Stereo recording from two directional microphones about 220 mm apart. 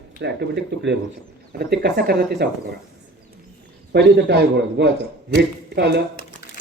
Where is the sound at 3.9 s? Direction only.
50° right (ahead or behind).